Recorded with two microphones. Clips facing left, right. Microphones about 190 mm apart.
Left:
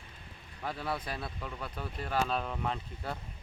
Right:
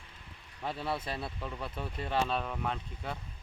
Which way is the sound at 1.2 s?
Centre (ahead or behind).